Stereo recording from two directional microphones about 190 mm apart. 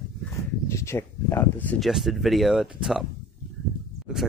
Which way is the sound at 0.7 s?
15° left (ahead or behind).